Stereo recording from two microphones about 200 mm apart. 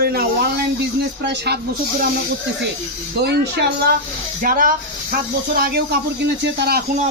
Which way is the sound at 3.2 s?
55° right (ahead or behind).